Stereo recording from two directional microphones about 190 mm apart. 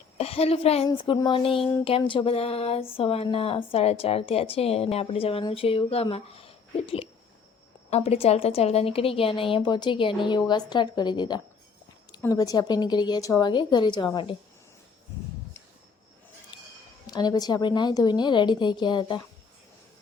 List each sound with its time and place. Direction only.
0.2 s a woman's voice: 30° left (ahead or behind)
16.5 s a sound: 25° left (ahead or behind)
17.1 s a woman's voice: 20° left (ahead or behind)